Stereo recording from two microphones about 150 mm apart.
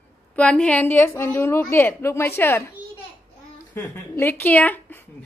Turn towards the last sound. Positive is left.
turn(degrees=10)  # may be behind; listen again after turning